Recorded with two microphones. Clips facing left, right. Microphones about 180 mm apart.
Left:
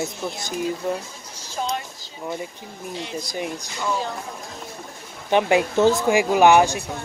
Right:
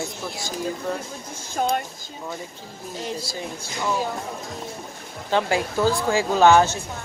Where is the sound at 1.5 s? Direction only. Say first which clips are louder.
Right 4 dB; 50° right (ahead or behind).